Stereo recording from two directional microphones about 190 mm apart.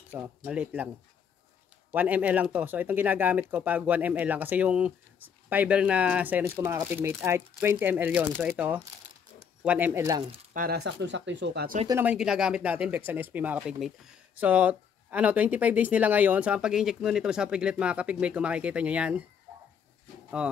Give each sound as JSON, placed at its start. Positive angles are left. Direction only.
{"t": 0.1, "sound": "speech", "side_deg": -5}
{"t": 1.9, "sound": "speech", "side_deg": -10}
{"t": 10.5, "sound": "speech", "side_deg": -45}
{"t": 11.0, "sound": "speech", "side_deg": -70}
{"t": 11.9, "sound": "speech", "side_deg": -10}
{"t": 20.4, "sound": "speech", "side_deg": -5}